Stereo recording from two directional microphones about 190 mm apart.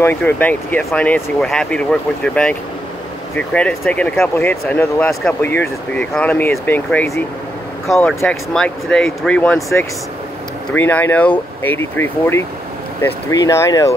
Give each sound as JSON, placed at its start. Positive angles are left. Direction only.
{"t": 0.0, "sound": "speech", "side_deg": 10}